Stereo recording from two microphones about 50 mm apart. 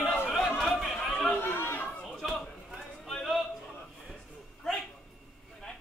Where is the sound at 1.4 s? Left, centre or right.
Left.